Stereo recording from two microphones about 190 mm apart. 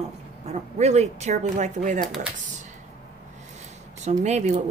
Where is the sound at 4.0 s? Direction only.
35° right (ahead or behind).